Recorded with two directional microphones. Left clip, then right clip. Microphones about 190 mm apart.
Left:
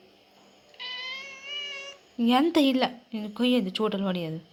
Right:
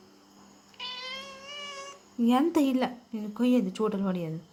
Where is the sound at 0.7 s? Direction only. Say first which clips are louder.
Left 2 dB; 20° right (ahead or behind).